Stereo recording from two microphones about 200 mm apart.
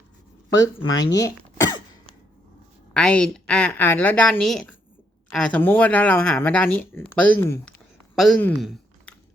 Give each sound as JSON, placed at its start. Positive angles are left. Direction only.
{"t": 1.2, "sound": "throat clearing", "side_deg": 15}
{"t": 2.9, "sound": "a woman's voice", "side_deg": 5}